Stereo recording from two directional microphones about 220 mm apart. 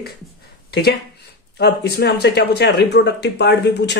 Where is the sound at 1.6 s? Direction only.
45° left (ahead or behind).